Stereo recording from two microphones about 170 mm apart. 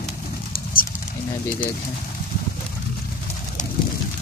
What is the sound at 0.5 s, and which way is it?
Pigeon, 60° left (ahead or behind).